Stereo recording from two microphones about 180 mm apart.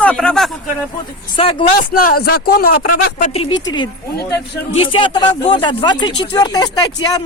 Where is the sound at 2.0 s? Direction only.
55° left (ahead or behind).